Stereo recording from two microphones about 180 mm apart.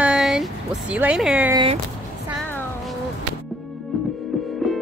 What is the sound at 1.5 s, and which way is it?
Speech, 30° right (ahead or behind).